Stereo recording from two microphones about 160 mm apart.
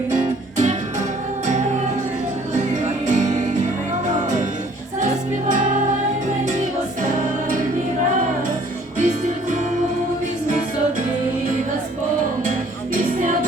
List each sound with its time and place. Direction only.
0.1 s music: 50° right (ahead or behind)
2.6 s music: 50° right (ahead or behind)
9.0 s music: 50° right (ahead or behind)